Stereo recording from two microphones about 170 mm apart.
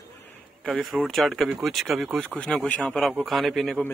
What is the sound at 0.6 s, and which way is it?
Speech, centre (ahead or behind).